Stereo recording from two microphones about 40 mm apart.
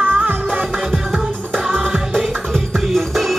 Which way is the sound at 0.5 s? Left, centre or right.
Centre.